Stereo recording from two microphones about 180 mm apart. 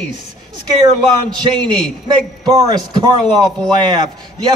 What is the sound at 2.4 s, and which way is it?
A man's voice, 20° right (ahead or behind).